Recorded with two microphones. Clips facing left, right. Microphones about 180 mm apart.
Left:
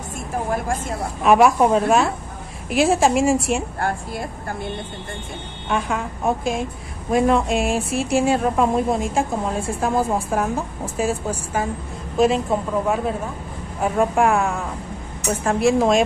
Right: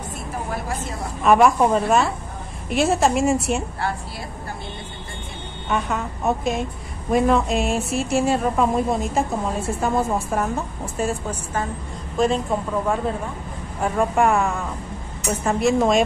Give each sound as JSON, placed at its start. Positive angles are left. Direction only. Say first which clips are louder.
{"t": 0.5, "sound": "a woman's voice", "louder": "left 5 dB", "side_deg": 50}
{"t": 1.2, "sound": "a woman's voice", "louder": "left 1 dB", "side_deg": 5}
{"t": 3.8, "sound": "a woman's voice", "louder": "left 3 dB", "side_deg": 50}
{"t": 5.7, "sound": "a woman's voice", "louder": "left 1 dB", "side_deg": 0}